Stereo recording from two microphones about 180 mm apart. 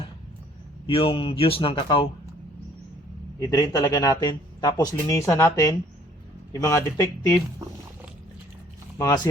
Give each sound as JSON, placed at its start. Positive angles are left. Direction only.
{"t": 0.9, "sound": "a man's voice", "side_deg": 30}
{"t": 3.4, "sound": "speech", "side_deg": 20}
{"t": 9.0, "sound": "speech", "side_deg": 15}